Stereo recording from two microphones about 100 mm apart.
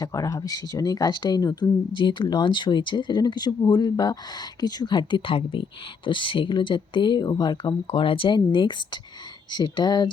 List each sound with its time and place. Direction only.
0.0 s speech: 35° left (ahead or behind)